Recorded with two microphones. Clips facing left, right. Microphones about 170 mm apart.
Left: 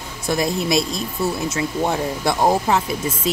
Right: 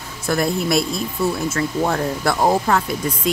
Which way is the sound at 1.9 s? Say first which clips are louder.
Right 1 dB; 15° left (ahead or behind).